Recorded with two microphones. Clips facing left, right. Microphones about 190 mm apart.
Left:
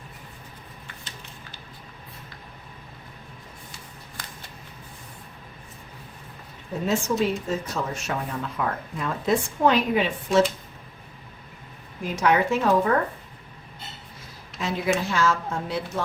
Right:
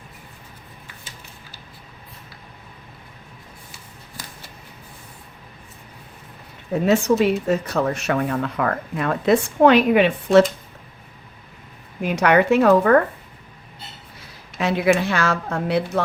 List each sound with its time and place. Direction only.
6.8 s speech: 70° right (ahead or behind)
12.0 s speech: 70° right (ahead or behind)
14.6 s speech: 70° right (ahead or behind)